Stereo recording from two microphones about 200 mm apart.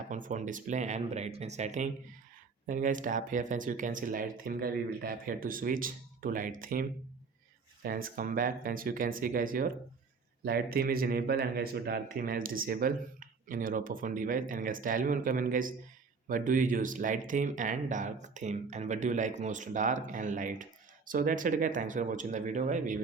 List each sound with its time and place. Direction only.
0.1 s speech: 40° right (ahead or behind)
7.9 s speech: 45° right (ahead or behind)